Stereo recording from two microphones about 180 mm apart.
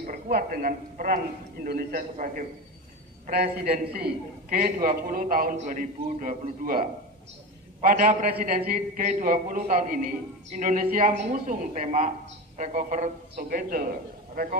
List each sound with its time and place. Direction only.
0.0 s a man's voice: 50° right (ahead or behind)
3.3 s a man's voice: 60° right (ahead or behind)